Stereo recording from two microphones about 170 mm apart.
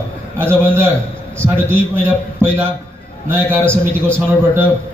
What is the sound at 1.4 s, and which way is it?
Speech, 15° right (ahead or behind).